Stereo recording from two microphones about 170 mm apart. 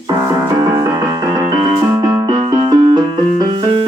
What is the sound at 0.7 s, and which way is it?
Music, 20° right (ahead or behind).